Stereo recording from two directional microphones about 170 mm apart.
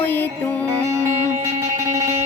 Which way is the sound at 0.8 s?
15° right (ahead or behind).